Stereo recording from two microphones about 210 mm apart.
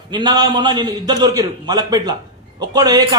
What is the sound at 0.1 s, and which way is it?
A man's voice, 20° right (ahead or behind).